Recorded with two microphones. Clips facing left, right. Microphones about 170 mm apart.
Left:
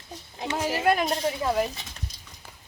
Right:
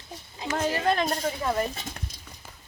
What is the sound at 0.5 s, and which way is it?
Speech, 10° left (ahead or behind).